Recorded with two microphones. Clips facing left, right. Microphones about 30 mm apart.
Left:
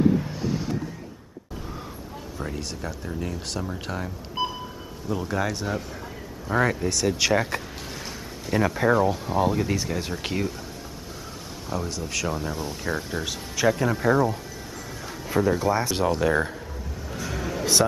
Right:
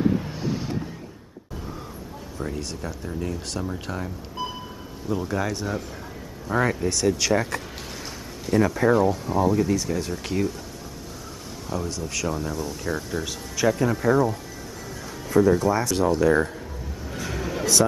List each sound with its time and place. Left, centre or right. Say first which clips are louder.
0.0 s vehicle: left 2 dB; centre
2.3 s speech: right 2 dB; centre
4.4 s a sound: left 4 dB; centre
5.0 s speech: right 1 dB; centre
7.1 s speech: even; centre
11.7 s speech: even; centre
17.1 s music: right 1 dB; centre